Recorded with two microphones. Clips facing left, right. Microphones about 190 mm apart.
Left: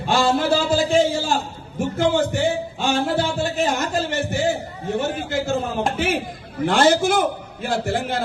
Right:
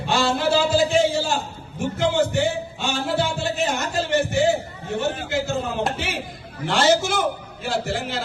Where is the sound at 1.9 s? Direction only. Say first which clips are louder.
Left 1 dB; 50° left (ahead or behind).